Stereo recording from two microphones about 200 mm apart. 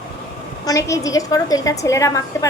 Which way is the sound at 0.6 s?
15° left (ahead or behind).